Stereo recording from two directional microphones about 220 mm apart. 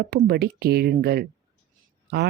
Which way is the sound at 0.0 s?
45° right (ahead or behind).